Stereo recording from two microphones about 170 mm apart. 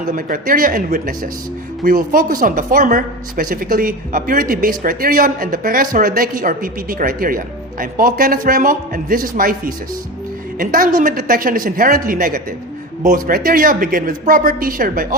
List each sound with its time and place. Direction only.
0.1 s speech: 55° right (ahead or behind)
10.6 s speech: 55° right (ahead or behind)